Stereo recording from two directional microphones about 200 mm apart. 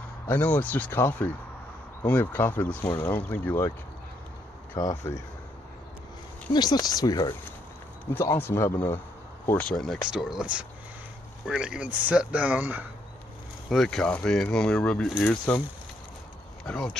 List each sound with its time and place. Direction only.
0.3 s speech: 10° left (ahead or behind)
4.7 s speech: 15° left (ahead or behind)
6.5 s speech: 20° left (ahead or behind); by 12.8 s 10° right (ahead or behind)
13.7 s speech: centre (ahead or behind)
16.6 s speech: 5° left (ahead or behind)